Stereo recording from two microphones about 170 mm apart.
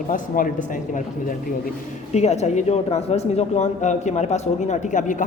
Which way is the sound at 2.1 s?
40° left (ahead or behind).